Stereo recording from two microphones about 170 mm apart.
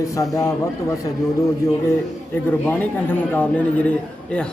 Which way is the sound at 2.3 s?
10° left (ahead or behind).